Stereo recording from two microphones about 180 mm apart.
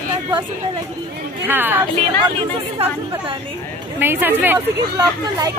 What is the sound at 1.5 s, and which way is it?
Speech, 10° right (ahead or behind).